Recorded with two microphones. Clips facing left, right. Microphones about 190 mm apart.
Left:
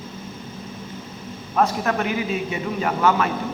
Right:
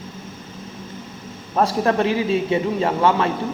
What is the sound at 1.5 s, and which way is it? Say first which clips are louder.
A man's voice: right 3 dB; 30° right (ahead or behind).